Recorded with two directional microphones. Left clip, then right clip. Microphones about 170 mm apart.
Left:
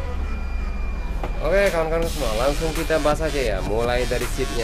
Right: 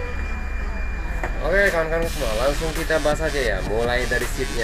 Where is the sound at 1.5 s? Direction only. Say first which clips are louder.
Even; 5° left (ahead or behind).